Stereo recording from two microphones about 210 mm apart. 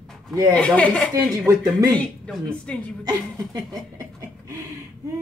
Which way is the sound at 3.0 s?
15° right (ahead or behind).